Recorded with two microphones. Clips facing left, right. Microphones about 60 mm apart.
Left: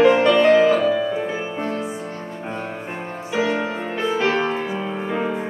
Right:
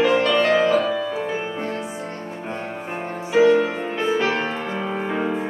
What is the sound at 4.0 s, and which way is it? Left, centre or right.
Music, centre.